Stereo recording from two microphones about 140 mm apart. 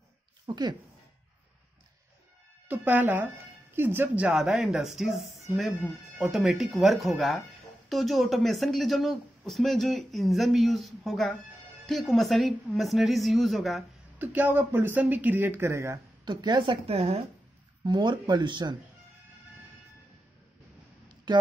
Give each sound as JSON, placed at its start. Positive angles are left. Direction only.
{"t": 0.5, "sound": "speech", "side_deg": -30}
{"t": 2.7, "sound": "speech", "side_deg": -15}
{"t": 14.1, "sound": "speech", "side_deg": -15}
{"t": 16.3, "sound": "a woman's voice", "side_deg": -30}
{"t": 17.8, "sound": "a woman's voice", "side_deg": -30}
{"t": 21.3, "sound": "speech", "side_deg": -35}